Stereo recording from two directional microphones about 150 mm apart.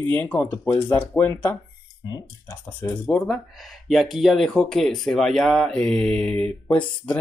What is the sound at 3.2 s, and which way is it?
Speech, centre (ahead or behind).